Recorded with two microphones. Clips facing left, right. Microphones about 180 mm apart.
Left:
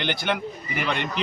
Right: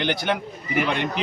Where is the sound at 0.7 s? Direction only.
50° right (ahead or behind).